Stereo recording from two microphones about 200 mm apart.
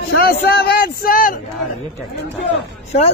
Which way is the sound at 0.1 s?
50° left (ahead or behind).